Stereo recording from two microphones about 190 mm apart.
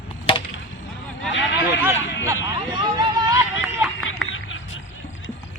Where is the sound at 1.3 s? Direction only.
75° left (ahead or behind).